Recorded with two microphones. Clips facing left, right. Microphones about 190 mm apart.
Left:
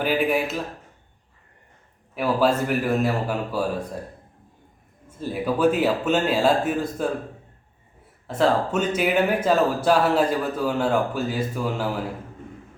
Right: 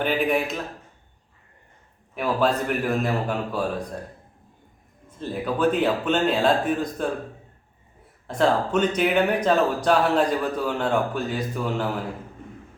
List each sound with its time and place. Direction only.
0.0 s speech: 5° left (ahead or behind)
2.1 s speech: 5° left (ahead or behind)
5.0 s speech: 10° left (ahead or behind)
8.3 s speech: 5° left (ahead or behind)